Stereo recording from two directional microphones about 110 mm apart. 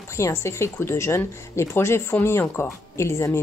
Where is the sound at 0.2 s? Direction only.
25° left (ahead or behind).